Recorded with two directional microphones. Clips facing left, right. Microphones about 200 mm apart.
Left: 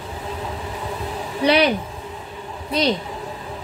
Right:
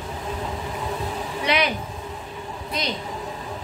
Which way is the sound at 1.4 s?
35° left (ahead or behind).